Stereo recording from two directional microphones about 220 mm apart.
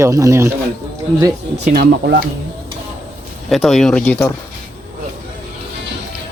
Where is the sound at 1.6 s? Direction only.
45° right (ahead or behind).